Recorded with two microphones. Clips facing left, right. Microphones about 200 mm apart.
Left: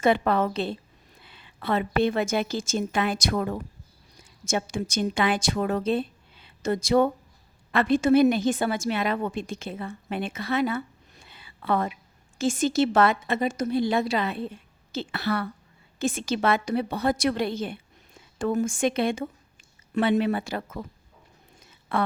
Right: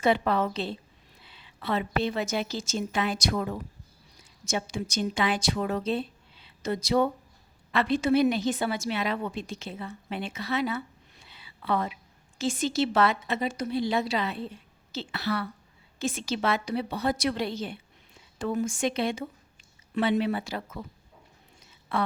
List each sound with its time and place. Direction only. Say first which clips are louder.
0.0 s a woman's voice: left 2 dB; 50° left (ahead or behind)
21.9 s a woman's voice: left 2 dB; 50° left (ahead or behind)